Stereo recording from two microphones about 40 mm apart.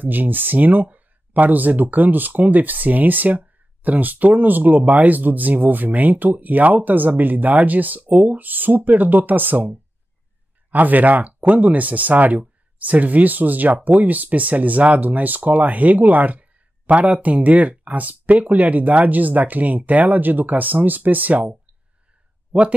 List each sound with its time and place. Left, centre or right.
0.0 s speech: right
10.7 s speech: right
22.5 s speech: right